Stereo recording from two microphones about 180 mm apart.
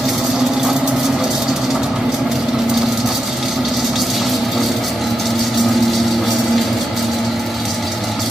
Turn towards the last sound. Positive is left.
turn(degrees=0)  # may be behind; listen again after turning